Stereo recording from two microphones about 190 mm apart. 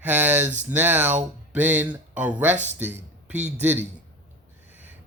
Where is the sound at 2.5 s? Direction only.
40° right (ahead or behind).